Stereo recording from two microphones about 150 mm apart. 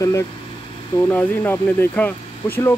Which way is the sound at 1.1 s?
15° left (ahead or behind).